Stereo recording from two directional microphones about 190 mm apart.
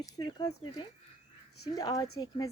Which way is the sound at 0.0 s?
25° left (ahead or behind).